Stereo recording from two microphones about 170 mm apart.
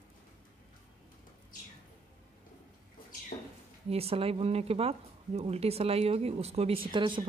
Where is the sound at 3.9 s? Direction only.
35° right (ahead or behind).